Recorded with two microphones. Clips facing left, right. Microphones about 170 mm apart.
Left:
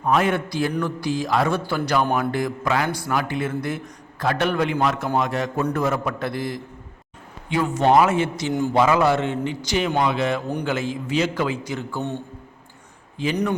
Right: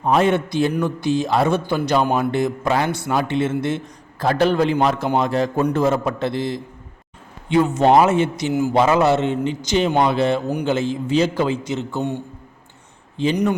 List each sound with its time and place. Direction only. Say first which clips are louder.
0.0 s a man's voice: right 3 dB; 30° right (ahead or behind)
13.3 s speech: right 2 dB; 10° right (ahead or behind)